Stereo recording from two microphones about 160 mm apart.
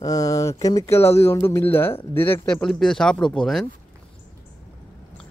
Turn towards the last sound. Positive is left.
turn(degrees=5)  # may be behind; listen again after turning